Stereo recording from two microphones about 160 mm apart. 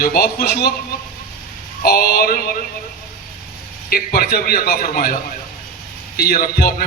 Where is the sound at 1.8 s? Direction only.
70° left (ahead or behind).